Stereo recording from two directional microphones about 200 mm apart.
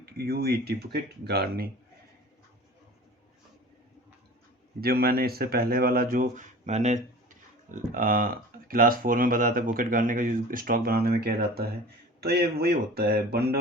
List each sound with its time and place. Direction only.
0.0 s speech: 50° right (ahead or behind)
4.8 s speech: 50° right (ahead or behind)